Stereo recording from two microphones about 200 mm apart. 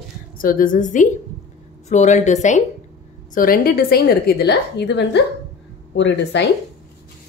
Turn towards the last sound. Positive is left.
turn(degrees=60)  # may be behind; listen again after turning